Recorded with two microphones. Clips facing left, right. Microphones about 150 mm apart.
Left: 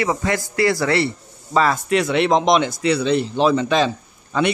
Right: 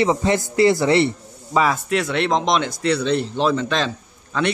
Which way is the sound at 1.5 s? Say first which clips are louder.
Left 2 dB; 5° right (ahead or behind).